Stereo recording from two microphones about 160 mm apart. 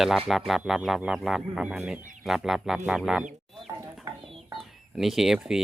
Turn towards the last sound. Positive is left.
turn(degrees=-5)  # may be behind; listen again after turning